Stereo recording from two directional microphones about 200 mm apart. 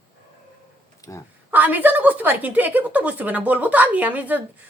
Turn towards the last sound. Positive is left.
turn(degrees=-5)  # may be behind; listen again after turning